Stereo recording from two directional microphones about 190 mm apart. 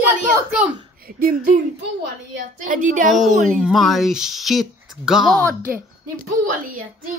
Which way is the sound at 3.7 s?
Centre (ahead or behind).